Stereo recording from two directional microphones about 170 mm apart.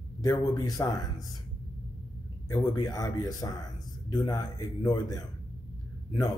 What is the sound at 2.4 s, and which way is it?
A man's voice, 20° left (ahead or behind).